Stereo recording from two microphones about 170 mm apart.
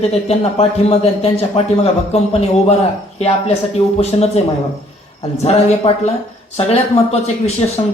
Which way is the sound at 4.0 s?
40° left (ahead or behind).